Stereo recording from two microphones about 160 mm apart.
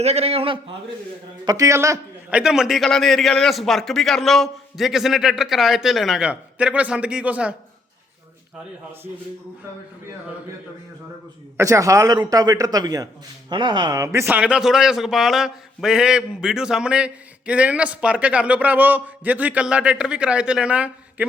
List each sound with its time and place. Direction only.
0.0 s a man's voice: 40° right (ahead or behind)
1.5 s a man's voice: 20° right (ahead or behind)
2.4 s a man's voice: 5° right (ahead or behind)
11.5 s speech: 20° right (ahead or behind)